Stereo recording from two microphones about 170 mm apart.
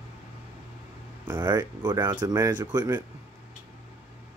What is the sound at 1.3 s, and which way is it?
Speech, 25° right (ahead or behind).